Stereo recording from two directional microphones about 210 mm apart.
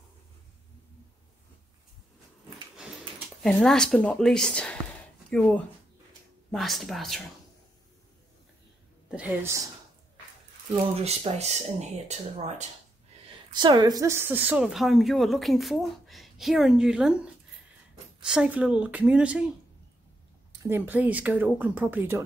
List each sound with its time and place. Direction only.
3.4 s speech: centre (ahead or behind)
9.1 s speech: 10° right (ahead or behind)
11.0 s speech: 30° right (ahead or behind)
13.6 s speech: 20° right (ahead or behind); by 19.5 s 5° right (ahead or behind)
20.6 s speech: 10° right (ahead or behind)